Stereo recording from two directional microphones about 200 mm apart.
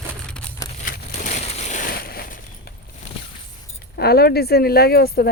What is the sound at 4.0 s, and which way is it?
Speech, 50° left (ahead or behind).